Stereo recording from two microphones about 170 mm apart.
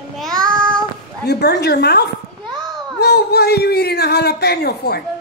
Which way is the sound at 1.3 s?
75° left (ahead or behind).